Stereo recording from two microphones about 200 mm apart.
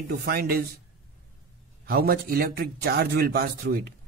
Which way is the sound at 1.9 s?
50° right (ahead or behind).